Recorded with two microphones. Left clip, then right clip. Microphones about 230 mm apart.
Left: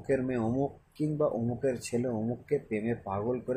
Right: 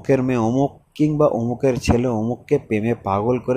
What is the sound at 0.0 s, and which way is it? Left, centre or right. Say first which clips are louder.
Speech: right 11 dB; right.